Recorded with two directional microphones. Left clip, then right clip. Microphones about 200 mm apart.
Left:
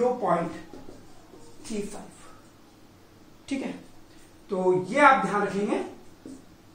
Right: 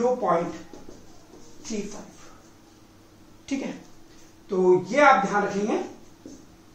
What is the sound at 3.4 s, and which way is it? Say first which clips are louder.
Speech: right 1 dB; centre (ahead or behind).